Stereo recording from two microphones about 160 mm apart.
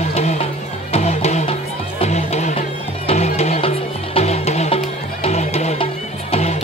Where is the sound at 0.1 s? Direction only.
40° left (ahead or behind).